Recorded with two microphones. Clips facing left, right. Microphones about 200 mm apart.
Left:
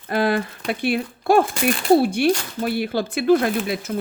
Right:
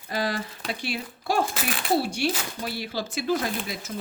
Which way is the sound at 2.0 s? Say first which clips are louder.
Left 8 dB; 55° left (ahead or behind).